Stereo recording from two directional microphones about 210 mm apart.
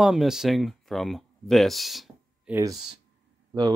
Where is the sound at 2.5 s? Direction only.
15° right (ahead or behind).